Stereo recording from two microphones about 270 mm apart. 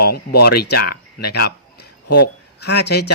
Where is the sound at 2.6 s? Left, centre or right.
Left.